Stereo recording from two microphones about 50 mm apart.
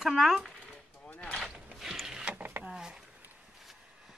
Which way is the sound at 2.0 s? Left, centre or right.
Centre.